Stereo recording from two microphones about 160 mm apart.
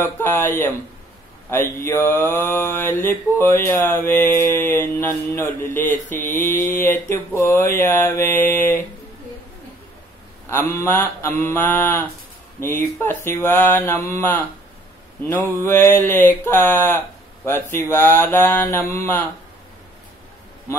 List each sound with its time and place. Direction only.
0.0 s mantra: 15° left (ahead or behind)
5.7 s speech: 55° left (ahead or behind)
6.2 s mantra: 15° left (ahead or behind)
10.9 s mantra: 15° left (ahead or behind)